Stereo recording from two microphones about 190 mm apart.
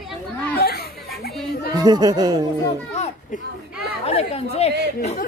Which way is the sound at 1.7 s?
20° right (ahead or behind).